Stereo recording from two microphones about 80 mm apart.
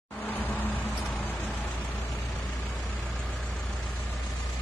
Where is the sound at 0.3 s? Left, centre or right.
Left.